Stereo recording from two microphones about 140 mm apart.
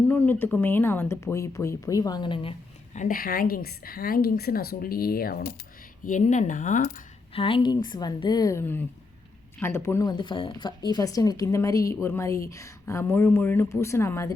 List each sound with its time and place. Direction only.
0.0 s speech: 10° left (ahead or behind); by 2.6 s 35° left (ahead or behind)
2.9 s a woman's voice: 75° left (ahead or behind)
6.1 s speech: 60° left (ahead or behind)
7.3 s speech: 40° left (ahead or behind); by 14.3 s 20° left (ahead or behind)